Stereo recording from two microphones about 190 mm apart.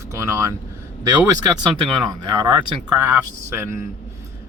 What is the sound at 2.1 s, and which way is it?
Speech, 25° right (ahead or behind).